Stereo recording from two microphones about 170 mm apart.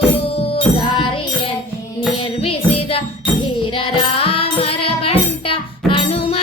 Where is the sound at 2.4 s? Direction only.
35° left (ahead or behind).